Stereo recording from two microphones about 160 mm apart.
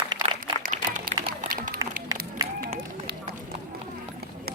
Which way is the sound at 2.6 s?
65° right (ahead or behind).